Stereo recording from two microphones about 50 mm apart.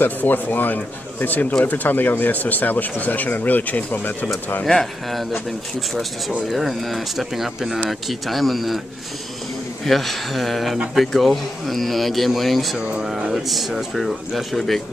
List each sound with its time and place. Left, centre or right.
0.0 s speech: left
4.6 s speech: centre
6.5 s speech: centre
9.8 s speech: centre
12.7 s speech: right
13.3 s speech: centre